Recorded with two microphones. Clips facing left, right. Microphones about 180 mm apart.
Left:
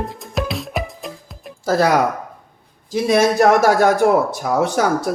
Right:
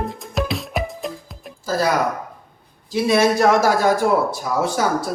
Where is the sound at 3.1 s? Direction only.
60° left (ahead or behind).